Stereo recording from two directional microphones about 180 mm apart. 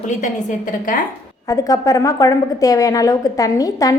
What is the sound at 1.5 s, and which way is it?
A woman's voice, 20° left (ahead or behind).